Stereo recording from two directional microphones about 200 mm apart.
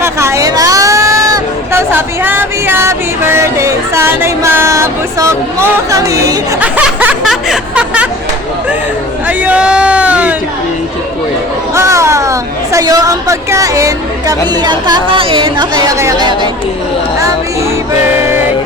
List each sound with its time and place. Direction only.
0.0 s speech: 15° right (ahead or behind)
9.2 s speech: 5° right (ahead or behind)
11.7 s speech: 15° right (ahead or behind)